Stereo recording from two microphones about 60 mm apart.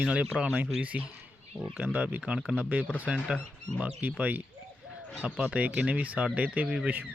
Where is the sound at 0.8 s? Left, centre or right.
Right.